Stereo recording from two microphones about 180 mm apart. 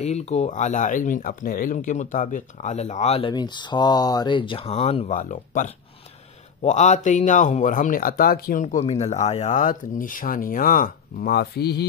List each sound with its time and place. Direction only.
0.0 s speech: 40° left (ahead or behind); by 8.6 s 55° left (ahead or behind)
8.7 s speech: 35° left (ahead or behind); by 11.8 s 65° left (ahead or behind)